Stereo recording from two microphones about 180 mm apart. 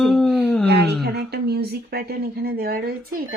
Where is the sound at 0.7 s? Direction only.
65° right (ahead or behind).